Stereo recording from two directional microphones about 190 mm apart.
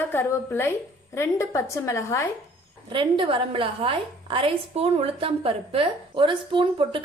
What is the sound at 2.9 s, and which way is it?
A woman's voice, 25° right (ahead or behind).